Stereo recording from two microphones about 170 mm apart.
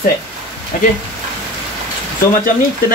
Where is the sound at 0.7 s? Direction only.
50° left (ahead or behind).